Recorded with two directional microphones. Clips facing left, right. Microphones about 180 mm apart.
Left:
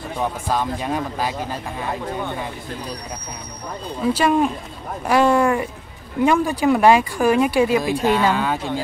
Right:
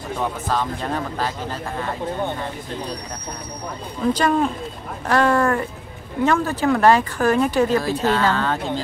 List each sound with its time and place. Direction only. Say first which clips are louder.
0.2 s speech: left 1 dB; 10° left (ahead or behind)
4.0 s speech: left 1 dB; 10° left (ahead or behind)